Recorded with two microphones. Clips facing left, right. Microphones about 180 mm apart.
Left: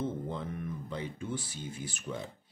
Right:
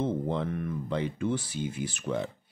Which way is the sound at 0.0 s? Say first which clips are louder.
Right 6 dB; 75° right (ahead or behind).